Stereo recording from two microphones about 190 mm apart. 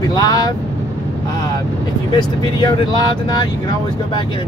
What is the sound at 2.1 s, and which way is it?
Speech, 25° left (ahead or behind).